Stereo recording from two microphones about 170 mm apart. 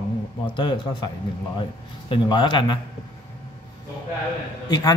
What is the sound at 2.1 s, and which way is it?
Speech, 25° left (ahead or behind).